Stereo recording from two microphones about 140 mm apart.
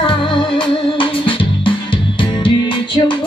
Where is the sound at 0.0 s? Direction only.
35° left (ahead or behind).